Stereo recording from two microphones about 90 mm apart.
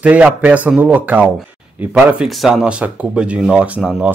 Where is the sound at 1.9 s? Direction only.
5° right (ahead or behind).